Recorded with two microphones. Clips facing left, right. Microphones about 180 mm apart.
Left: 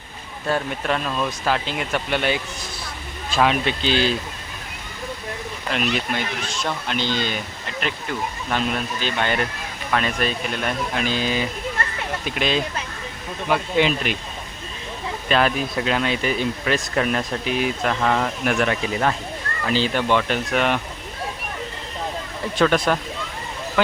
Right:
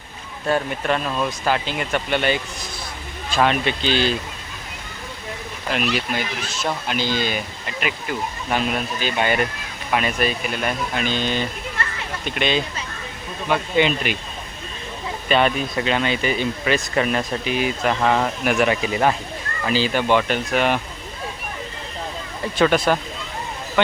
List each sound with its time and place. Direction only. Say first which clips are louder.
0.5 s speech: right 2 dB; centre (ahead or behind)
5.7 s speech: right 1 dB; 5° right (ahead or behind)
15.3 s speech: right 1 dB; centre (ahead or behind)
22.5 s speech: right 1 dB; centre (ahead or behind)